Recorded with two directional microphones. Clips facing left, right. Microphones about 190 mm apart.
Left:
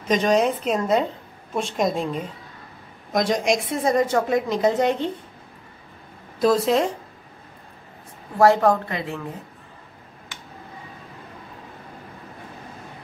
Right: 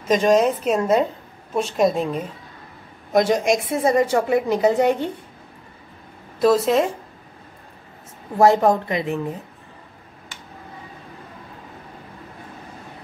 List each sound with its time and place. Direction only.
0.1 s a woman's voice: 5° right (ahead or behind)
6.4 s a woman's voice: centre (ahead or behind)
8.4 s speech: 20° right (ahead or behind)